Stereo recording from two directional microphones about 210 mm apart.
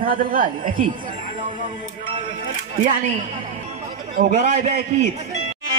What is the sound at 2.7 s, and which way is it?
Speech, 35° right (ahead or behind).